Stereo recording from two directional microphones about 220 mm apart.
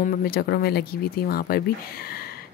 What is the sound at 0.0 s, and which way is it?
A woman's voice, 45° left (ahead or behind).